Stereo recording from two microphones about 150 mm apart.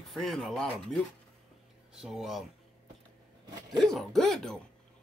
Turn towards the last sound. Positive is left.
turn(degrees=5)  # may be behind; listen again after turning